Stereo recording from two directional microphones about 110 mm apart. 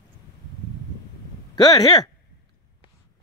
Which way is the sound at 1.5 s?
40° left (ahead or behind).